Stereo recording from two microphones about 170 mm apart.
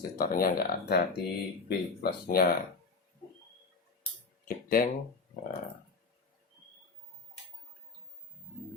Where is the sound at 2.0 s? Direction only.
65° left (ahead or behind).